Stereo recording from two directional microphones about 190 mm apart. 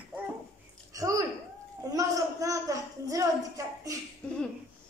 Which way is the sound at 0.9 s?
20° right (ahead or behind).